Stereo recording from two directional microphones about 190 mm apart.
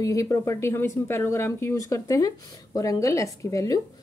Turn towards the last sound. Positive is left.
turn(degrees=15)  # may be behind; listen again after turning